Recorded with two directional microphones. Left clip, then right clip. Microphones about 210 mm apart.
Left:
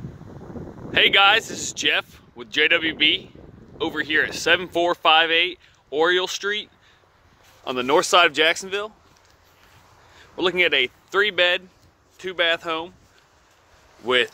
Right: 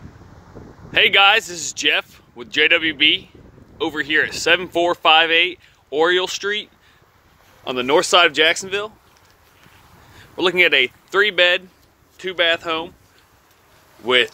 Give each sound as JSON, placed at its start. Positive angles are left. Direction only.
{"t": 0.9, "sound": "speech", "side_deg": 0}
{"t": 10.1, "sound": "speech", "side_deg": 0}
{"t": 14.0, "sound": "speech", "side_deg": 0}